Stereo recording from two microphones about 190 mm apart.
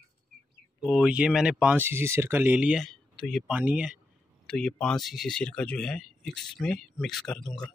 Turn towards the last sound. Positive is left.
turn(degrees=5)  # may be behind; listen again after turning